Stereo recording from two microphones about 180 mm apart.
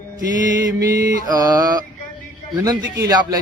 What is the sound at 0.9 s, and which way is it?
Speech, 20° right (ahead or behind).